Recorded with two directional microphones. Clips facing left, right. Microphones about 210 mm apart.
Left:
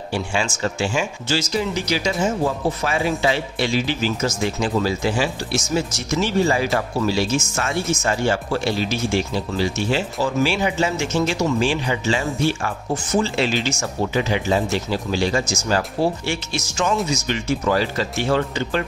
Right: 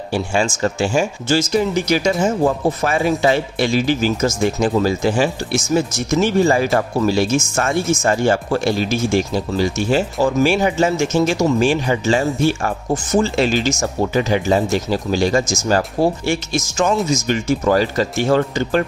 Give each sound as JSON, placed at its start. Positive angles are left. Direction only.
{"t": 0.1, "sound": "speech", "side_deg": -45}